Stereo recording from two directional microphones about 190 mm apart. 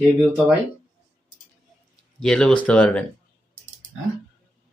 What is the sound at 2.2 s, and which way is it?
Speech, 5° left (ahead or behind).